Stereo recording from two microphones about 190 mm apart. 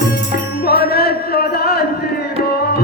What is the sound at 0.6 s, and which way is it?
Music, 55° left (ahead or behind).